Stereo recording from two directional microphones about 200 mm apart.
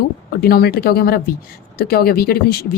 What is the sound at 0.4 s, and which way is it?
Speech, 50° left (ahead or behind).